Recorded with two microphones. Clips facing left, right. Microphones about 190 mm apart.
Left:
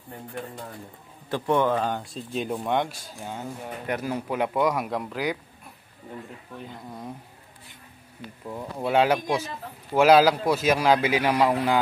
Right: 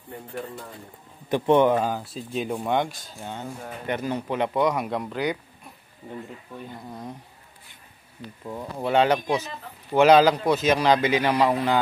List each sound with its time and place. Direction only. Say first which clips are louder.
1.3 s a man's voice: right 4 dB; 20° right (ahead or behind)
1.9 s speech: right 1 dB; 5° right (ahead or behind)
6.9 s speech: even; 5° left (ahead or behind)
8.5 s speech: right 1 dB; centre (ahead or behind)